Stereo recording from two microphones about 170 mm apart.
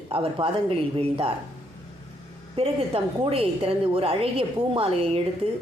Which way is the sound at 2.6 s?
35° right (ahead or behind).